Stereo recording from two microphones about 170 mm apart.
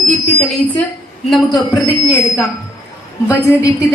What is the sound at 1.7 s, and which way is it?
A woman's voice, 20° left (ahead or behind).